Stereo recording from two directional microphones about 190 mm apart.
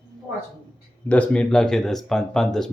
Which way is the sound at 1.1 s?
5° left (ahead or behind).